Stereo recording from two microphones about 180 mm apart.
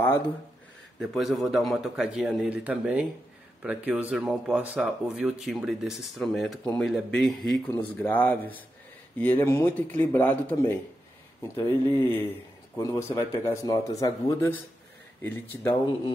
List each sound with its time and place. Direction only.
0.9 s speech: centre (ahead or behind)